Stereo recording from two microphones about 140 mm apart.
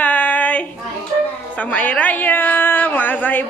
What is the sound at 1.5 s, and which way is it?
A woman's voice, 10° left (ahead or behind).